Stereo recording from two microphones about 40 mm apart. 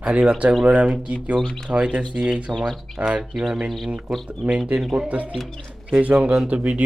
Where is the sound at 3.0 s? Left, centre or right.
Right.